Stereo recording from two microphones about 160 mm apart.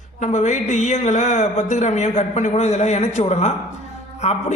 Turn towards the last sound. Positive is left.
turn(degrees=45)  # may be behind; listen again after turning